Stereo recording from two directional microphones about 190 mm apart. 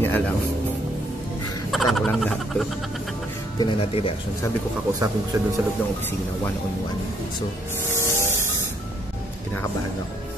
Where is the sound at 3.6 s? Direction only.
25° left (ahead or behind).